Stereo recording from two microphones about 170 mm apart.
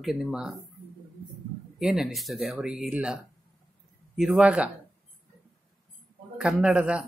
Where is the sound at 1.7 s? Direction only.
Centre (ahead or behind).